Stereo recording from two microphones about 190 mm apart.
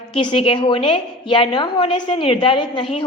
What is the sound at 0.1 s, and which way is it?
A woman's voice, 25° left (ahead or behind).